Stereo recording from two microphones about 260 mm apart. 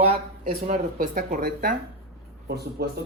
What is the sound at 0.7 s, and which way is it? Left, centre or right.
Speech, right.